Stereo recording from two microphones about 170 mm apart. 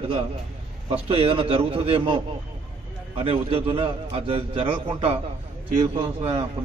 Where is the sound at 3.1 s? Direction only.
35° right (ahead or behind).